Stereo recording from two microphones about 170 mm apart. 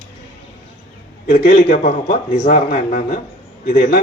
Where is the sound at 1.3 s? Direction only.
55° left (ahead or behind).